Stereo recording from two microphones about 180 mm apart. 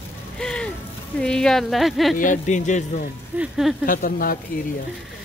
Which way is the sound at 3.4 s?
Centre (ahead or behind).